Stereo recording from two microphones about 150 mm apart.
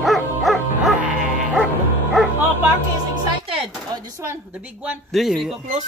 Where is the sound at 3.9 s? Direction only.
20° right (ahead or behind).